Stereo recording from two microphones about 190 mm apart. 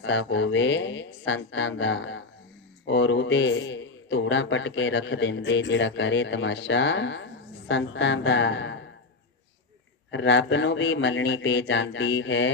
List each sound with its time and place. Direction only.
0.0 s a man's voice: 75° left (ahead or behind)
10.1 s a man's voice: 75° left (ahead or behind)